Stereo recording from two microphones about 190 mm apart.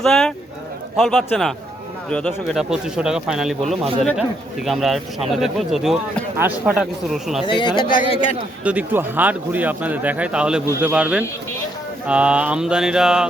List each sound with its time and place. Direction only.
0.0 s speech: centre (ahead or behind)
7.4 s speech: 25° left (ahead or behind)
8.6 s speech: 10° right (ahead or behind)